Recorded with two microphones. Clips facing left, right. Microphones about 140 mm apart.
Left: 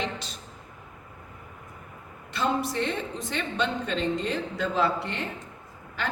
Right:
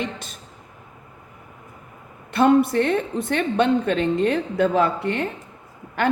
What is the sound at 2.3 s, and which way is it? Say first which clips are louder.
A woman's voice: right 11 dB; 55° right (ahead or behind).